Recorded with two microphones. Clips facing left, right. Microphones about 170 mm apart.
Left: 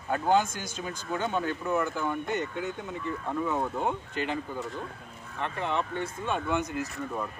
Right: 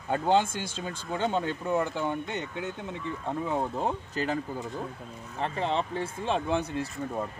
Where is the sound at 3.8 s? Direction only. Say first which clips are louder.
Right 1 dB; 40° right (ahead or behind).